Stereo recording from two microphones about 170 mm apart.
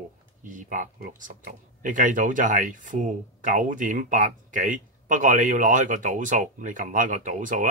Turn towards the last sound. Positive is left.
turn(degrees=-50)  # may be behind; listen again after turning